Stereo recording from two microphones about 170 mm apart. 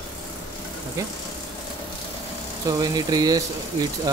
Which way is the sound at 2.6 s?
25° right (ahead or behind).